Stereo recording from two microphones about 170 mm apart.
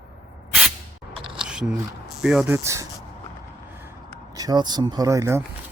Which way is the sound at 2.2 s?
5° right (ahead or behind).